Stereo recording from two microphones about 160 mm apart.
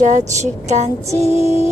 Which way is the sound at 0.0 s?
50° right (ahead or behind).